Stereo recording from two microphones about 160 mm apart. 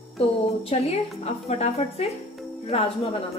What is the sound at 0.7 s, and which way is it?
A woman's voice, 40° left (ahead or behind).